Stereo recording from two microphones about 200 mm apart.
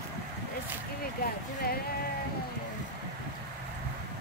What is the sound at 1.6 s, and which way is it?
Music, 50° left (ahead or behind).